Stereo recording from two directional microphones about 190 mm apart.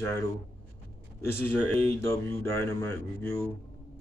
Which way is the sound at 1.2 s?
10° left (ahead or behind).